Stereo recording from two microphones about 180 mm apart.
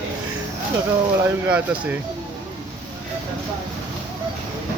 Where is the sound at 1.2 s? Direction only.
10° right (ahead or behind).